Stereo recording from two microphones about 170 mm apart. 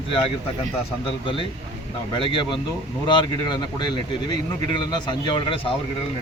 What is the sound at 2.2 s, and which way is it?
Speech, 30° left (ahead or behind).